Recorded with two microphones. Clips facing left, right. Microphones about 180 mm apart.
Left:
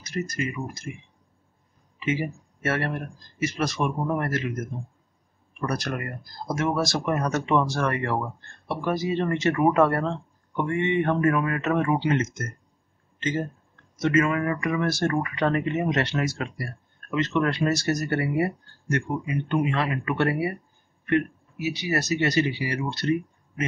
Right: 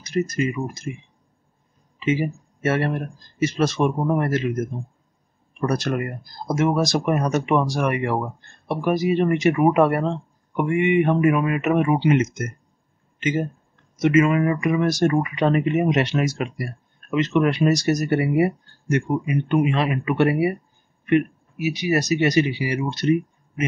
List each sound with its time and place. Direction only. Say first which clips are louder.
0.0 s speech: right 7 dB; 25° right (ahead or behind)
2.0 s speech: right 5 dB; 20° right (ahead or behind)